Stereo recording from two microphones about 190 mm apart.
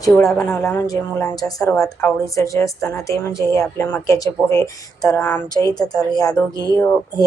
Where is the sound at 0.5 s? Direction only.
15° left (ahead or behind).